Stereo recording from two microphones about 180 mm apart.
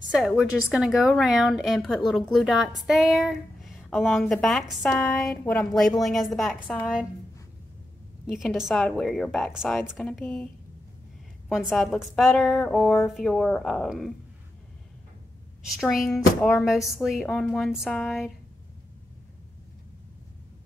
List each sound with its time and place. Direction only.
0.1 s a woman's voice: 5° right (ahead or behind)
8.3 s a woman's voice: centre (ahead or behind)
15.7 s a woman's voice: centre (ahead or behind)